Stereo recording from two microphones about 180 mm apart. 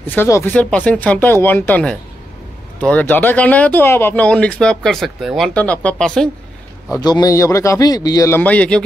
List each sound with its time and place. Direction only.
0.0 s speech: 10° left (ahead or behind)
7.0 s speech: 25° left (ahead or behind); by 8.8 s 5° left (ahead or behind)